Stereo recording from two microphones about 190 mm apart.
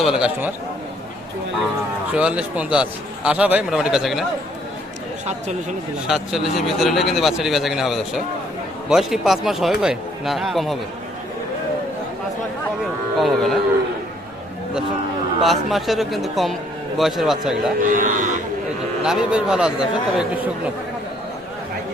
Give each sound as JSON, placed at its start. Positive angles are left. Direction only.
{"t": 0.0, "sound": "speech", "side_deg": -5}
{"t": 2.1, "sound": "speech", "side_deg": -5}
{"t": 6.1, "sound": "speech", "side_deg": 0}
{"t": 12.8, "sound": "speech", "side_deg": 0}
{"t": 15.4, "sound": "speech", "side_deg": 0}
{"t": 17.9, "sound": "speech", "side_deg": -40}
{"t": 19.0, "sound": "speech", "side_deg": -5}